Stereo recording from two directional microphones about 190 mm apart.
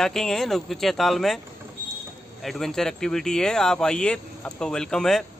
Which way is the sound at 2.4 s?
Centre (ahead or behind).